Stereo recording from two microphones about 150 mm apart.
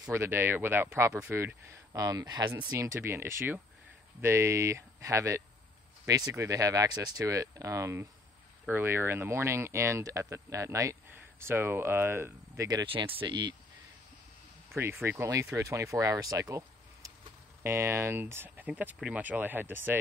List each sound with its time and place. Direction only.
0.0 s speech: 15° right (ahead or behind)
12.8 s speech: 35° right (ahead or behind)
14.8 s speech: 15° right (ahead or behind)